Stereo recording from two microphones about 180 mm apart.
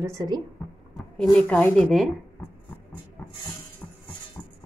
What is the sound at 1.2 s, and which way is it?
Speech, 10° left (ahead or behind).